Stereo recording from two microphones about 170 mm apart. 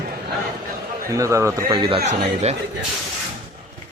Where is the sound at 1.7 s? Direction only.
30° right (ahead or behind).